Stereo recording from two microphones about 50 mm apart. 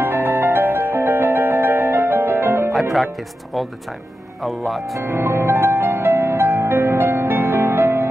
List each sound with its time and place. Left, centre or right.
0.0 s music: right
2.7 s music: centre
4.4 s speech: centre
4.9 s music: right